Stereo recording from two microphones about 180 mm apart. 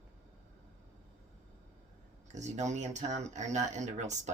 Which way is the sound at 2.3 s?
40° right (ahead or behind).